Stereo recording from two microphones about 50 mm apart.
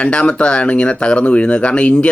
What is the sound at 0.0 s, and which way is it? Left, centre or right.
Speech, left.